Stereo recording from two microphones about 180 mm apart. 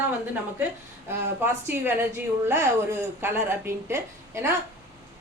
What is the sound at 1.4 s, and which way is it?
A woman's voice, 10° right (ahead or behind).